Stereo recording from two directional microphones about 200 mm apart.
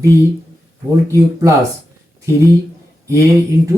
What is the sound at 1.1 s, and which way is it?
Speech, 15° right (ahead or behind).